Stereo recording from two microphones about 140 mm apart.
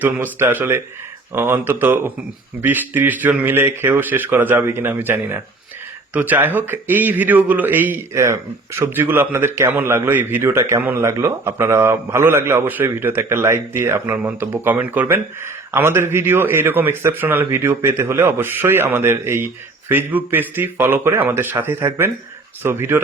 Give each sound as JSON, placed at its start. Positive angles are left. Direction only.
{"t": 0.0, "sound": "a man's voice", "side_deg": -15}